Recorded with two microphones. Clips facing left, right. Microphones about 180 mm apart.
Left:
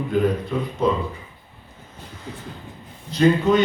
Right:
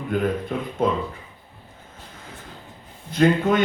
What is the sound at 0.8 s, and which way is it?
Speech, 50° right (ahead or behind).